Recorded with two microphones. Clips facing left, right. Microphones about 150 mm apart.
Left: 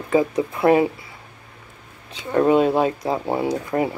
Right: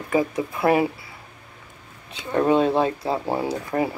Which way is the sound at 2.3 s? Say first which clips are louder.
Left 2 dB; 15° left (ahead or behind).